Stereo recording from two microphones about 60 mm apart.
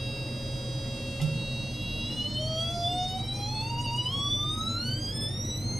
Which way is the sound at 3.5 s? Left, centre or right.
Centre.